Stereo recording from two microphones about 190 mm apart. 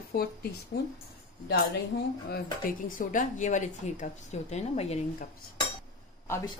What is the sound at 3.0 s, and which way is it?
A woman's voice, 45° left (ahead or behind).